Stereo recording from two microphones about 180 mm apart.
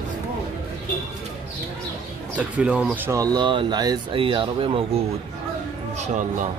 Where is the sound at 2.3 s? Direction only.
5° right (ahead or behind); by 5.0 s 30° right (ahead or behind).